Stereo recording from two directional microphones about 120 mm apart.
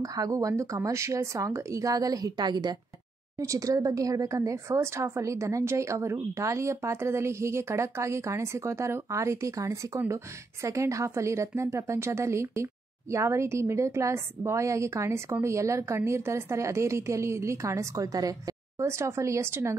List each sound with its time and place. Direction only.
0.0 s speech: 30° right (ahead or behind)